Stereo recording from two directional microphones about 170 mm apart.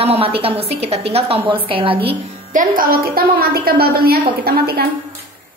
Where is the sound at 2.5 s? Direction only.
55° right (ahead or behind).